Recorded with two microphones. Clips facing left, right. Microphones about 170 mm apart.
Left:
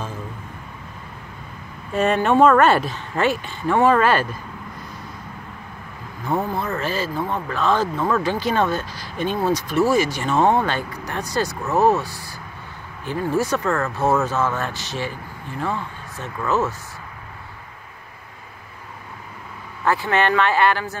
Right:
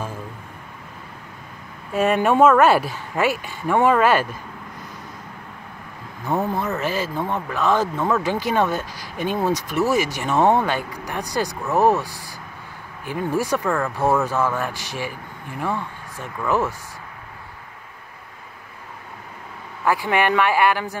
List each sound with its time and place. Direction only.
1.9 s speech: 5° right (ahead or behind)
6.5 s speech: 15° right (ahead or behind)
19.8 s speech: 10° right (ahead or behind)